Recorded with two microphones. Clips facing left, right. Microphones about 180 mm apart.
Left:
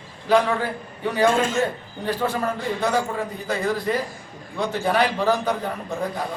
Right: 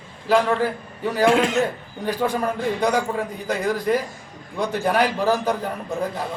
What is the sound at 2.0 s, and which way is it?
A man's voice, 15° right (ahead or behind).